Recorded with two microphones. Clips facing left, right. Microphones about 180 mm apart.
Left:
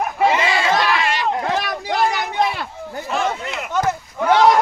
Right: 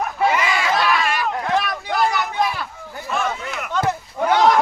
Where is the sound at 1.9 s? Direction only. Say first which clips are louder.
Left 2 dB; 25° left (ahead or behind).